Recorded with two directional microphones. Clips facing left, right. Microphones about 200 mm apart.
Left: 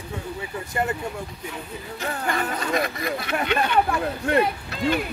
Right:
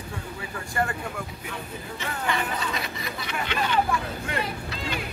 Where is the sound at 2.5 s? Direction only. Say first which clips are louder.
Left 6 dB; 50° left (ahead or behind).